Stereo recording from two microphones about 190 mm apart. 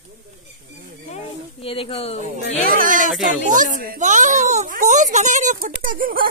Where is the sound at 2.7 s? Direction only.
45° right (ahead or behind).